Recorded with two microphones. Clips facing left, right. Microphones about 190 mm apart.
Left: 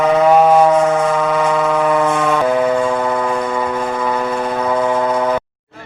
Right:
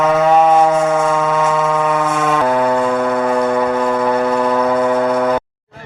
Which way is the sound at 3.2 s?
40° right (ahead or behind).